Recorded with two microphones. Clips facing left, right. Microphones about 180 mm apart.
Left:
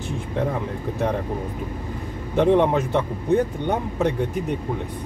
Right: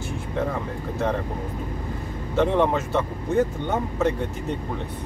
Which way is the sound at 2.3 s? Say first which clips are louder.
Left 3 dB; 15° left (ahead or behind).